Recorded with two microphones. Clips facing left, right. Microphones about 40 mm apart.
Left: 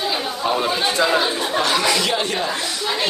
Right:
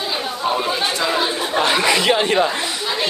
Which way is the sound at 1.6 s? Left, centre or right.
Right.